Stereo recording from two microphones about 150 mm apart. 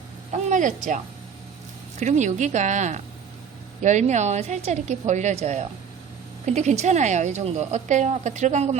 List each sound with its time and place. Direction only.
0.5 s speech: 60° right (ahead or behind)
2.0 s a woman's voice: 50° right (ahead or behind)